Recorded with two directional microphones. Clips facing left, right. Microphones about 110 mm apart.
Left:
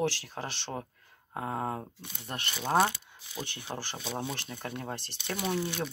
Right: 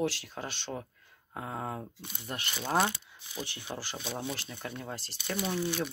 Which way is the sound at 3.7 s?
45° left (ahead or behind).